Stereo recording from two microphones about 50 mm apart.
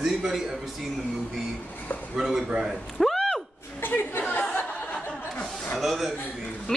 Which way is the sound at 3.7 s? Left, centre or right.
Left.